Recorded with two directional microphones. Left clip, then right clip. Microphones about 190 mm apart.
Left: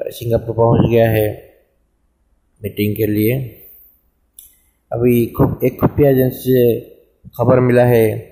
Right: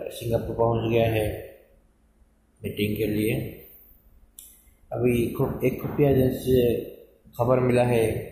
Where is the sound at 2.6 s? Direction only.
45° left (ahead or behind).